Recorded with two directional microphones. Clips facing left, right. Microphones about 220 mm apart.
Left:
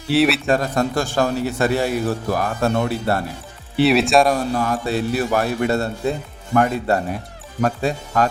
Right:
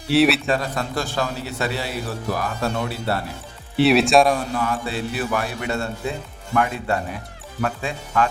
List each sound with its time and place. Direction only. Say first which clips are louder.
0.1 s speech: even; centre (ahead or behind)
0.4 s a man's voice: left 5 dB; 45° left (ahead or behind)
3.8 s speech: even; centre (ahead or behind)
4.5 s a man's voice: left 4 dB; 40° left (ahead or behind)